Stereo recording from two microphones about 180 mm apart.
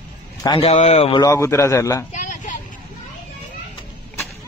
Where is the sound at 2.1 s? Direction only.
45° left (ahead or behind).